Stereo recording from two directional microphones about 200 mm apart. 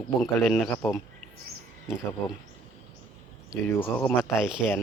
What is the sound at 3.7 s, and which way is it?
Speech, 10° left (ahead or behind).